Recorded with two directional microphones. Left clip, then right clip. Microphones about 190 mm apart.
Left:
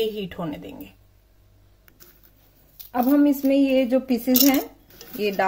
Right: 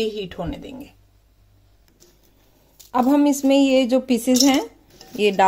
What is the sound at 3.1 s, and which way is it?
A woman's voice, 35° right (ahead or behind).